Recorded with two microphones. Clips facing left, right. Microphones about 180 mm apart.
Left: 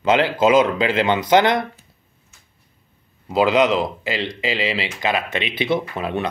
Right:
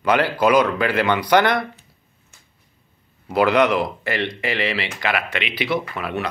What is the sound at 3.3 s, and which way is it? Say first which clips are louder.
Speech: left 1 dB; 15° left (ahead or behind).